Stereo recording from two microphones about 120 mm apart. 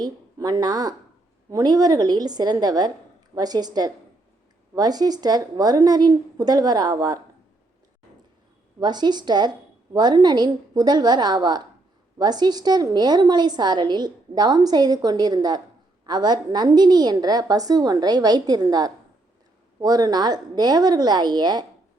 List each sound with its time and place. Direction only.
0.0 s a woman's voice: 30° right (ahead or behind)
8.8 s a woman's voice: 35° right (ahead or behind)